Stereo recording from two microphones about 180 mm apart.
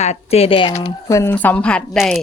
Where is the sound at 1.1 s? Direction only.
15° left (ahead or behind).